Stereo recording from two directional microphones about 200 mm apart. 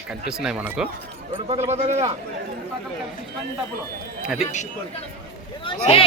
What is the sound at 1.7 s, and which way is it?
Speech, 30° right (ahead or behind).